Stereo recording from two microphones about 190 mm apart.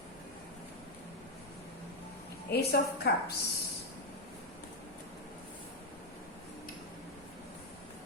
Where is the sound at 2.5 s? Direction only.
55° left (ahead or behind).